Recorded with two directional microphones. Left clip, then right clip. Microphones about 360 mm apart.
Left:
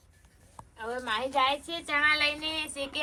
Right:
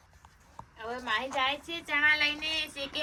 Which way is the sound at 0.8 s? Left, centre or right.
Left.